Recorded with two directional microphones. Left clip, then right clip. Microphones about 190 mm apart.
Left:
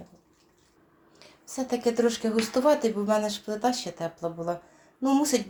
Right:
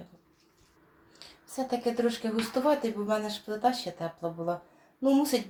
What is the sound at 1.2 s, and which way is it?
Speech, 30° left (ahead or behind).